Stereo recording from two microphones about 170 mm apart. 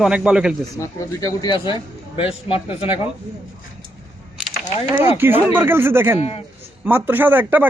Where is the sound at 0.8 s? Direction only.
20° left (ahead or behind); by 2.8 s 35° left (ahead or behind).